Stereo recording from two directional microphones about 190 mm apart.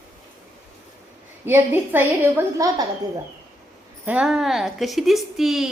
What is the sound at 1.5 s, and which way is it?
A woman's voice, 10° right (ahead or behind).